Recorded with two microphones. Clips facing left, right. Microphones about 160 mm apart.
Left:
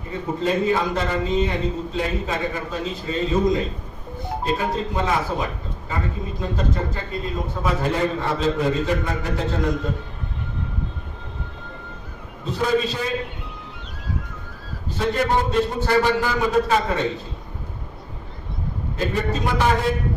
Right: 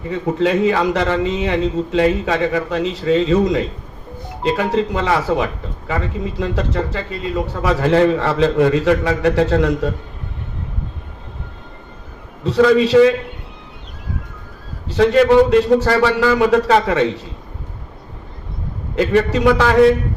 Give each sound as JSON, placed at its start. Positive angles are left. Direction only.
{"t": 0.1, "sound": "a man's voice", "side_deg": -85}
{"t": 12.4, "sound": "a man's voice", "side_deg": -85}
{"t": 14.9, "sound": "a man's voice", "side_deg": -80}
{"t": 18.9, "sound": "a man's voice", "side_deg": -80}